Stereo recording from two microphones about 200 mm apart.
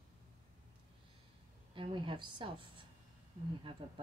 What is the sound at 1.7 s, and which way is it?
A woman's voice, 25° right (ahead or behind).